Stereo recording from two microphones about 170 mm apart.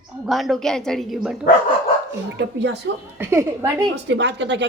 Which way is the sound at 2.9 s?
90° right.